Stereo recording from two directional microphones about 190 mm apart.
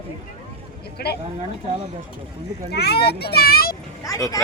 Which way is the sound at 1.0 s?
55° left (ahead or behind).